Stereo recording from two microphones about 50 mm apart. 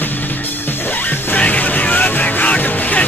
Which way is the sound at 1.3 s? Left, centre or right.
Left.